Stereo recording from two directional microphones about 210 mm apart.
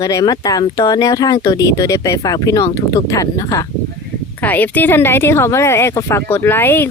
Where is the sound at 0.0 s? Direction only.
15° left (ahead or behind).